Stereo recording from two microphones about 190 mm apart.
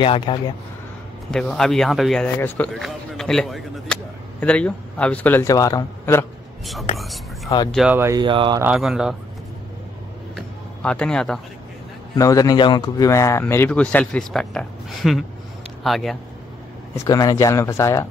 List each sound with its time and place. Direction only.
0.0 s speech: 30° left (ahead or behind)
1.3 s speech: centre (ahead or behind)
6.6 s speech: centre (ahead or behind)
7.4 s speech: 20° left (ahead or behind)
7.7 s speech: 5° right (ahead or behind)
8.2 s speech: 25° right (ahead or behind)
8.5 s speech: 5° right (ahead or behind)
10.3 s a sound: 5° left (ahead or behind)
12.2 s speech: 20° left (ahead or behind); by 16.2 s centre (ahead or behind)
16.9 s speech: 20° left (ahead or behind)